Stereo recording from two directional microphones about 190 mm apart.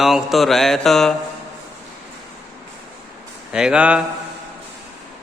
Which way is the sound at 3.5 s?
5° right (ahead or behind).